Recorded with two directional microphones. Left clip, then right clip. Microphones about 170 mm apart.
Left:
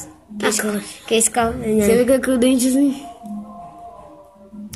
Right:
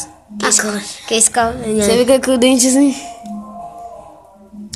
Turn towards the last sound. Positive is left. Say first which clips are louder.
# right 5 dB
turn(degrees=-40)  # may be behind; listen again after turning